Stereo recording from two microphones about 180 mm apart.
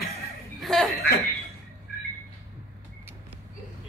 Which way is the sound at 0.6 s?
Centre (ahead or behind).